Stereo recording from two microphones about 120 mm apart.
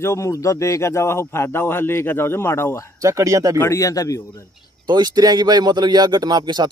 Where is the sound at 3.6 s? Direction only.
25° left (ahead or behind).